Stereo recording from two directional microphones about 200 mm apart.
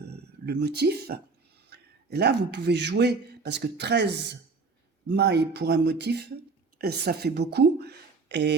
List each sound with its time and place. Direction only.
0.0 s a man's voice: 55° right (ahead or behind)